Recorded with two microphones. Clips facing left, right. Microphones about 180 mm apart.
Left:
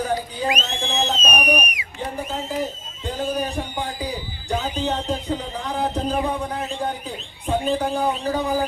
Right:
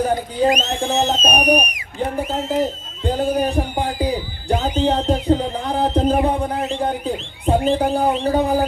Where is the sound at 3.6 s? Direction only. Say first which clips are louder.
Right 7 dB; 40° right (ahead or behind).